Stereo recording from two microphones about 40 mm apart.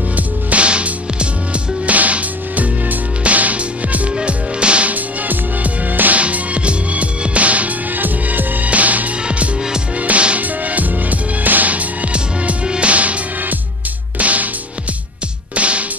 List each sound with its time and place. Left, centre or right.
0.1 s music: right
4.2 s music: right
4.9 s music: right
6.2 s music: right
12.6 s music: right
12.9 s music: right
15.5 s music: right